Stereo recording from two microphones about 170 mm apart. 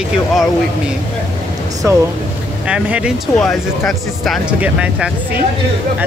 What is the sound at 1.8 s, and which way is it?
Speech, 15° right (ahead or behind).